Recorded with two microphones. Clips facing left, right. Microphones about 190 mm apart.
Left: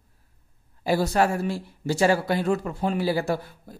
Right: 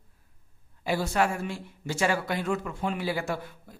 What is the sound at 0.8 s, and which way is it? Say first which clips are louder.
Speech: left 4 dB; 40° left (ahead or behind).